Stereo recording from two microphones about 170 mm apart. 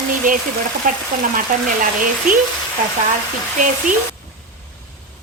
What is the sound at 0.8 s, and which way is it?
Speech, 50° right (ahead or behind).